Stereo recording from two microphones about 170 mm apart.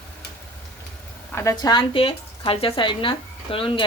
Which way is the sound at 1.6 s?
25° left (ahead or behind).